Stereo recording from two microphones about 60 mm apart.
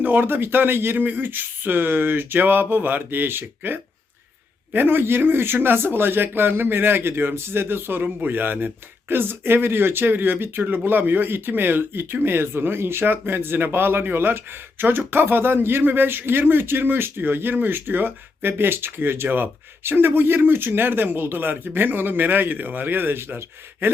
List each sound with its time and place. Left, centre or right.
0.0 s speech: right
23.8 s gasp: right